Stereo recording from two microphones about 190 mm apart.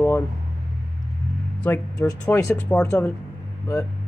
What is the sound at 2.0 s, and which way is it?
Speech, 15° left (ahead or behind).